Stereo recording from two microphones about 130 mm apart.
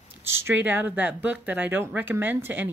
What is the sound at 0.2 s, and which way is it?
Speech, 20° right (ahead or behind).